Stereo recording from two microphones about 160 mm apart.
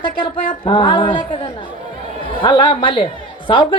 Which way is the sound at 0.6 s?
30° left (ahead or behind).